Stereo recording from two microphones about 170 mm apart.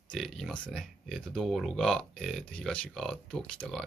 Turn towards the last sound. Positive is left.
turn(degrees=5)  # may be behind; listen again after turning